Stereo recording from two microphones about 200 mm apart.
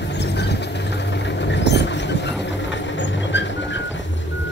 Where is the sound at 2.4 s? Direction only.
65° left (ahead or behind).